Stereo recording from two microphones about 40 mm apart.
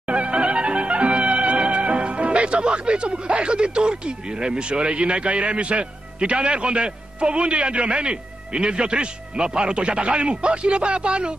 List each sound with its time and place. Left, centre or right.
0.1 s music: right
4.4 s a man's voice: right